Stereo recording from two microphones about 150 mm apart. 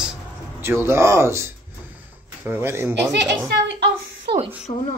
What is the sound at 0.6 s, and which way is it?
Speech, 15° right (ahead or behind).